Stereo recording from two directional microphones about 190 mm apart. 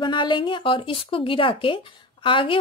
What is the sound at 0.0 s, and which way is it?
Speech, 25° left (ahead or behind).